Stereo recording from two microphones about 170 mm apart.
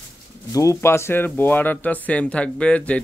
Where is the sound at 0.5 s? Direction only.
20° left (ahead or behind).